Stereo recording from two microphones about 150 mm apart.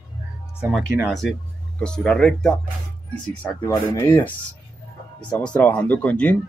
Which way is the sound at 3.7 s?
20° left (ahead or behind).